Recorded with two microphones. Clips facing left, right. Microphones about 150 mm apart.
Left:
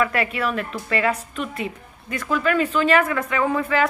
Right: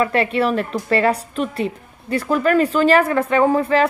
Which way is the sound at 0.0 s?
30° right (ahead or behind).